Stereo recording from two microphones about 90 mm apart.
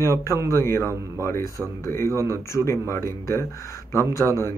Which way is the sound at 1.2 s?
30° left (ahead or behind).